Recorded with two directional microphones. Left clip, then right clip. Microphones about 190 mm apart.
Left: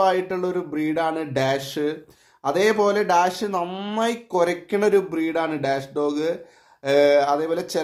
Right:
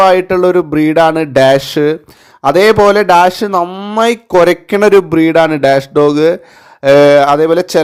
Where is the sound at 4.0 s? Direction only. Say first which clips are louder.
Right 13 dB; 50° right (ahead or behind).